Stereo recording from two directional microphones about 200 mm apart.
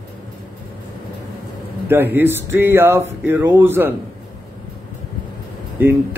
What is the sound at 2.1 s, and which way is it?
Speech, 10° right (ahead or behind).